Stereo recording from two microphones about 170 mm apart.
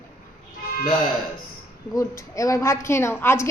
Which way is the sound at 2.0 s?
20° left (ahead or behind).